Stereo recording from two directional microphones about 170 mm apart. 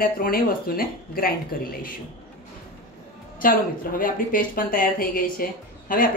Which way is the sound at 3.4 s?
55° left (ahead or behind).